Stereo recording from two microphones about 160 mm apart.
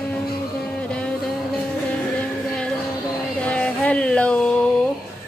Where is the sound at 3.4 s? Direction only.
10° left (ahead or behind).